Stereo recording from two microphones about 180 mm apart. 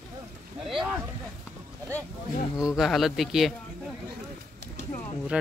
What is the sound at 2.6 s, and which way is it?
A man's voice, 5° right (ahead or behind).